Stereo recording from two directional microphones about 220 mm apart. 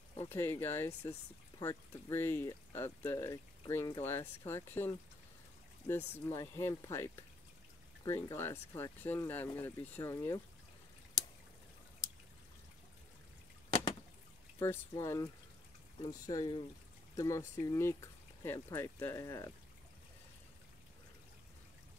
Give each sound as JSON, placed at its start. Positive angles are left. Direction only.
{"t": 0.1, "sound": "speech", "side_deg": 10}
{"t": 14.6, "sound": "speech", "side_deg": 10}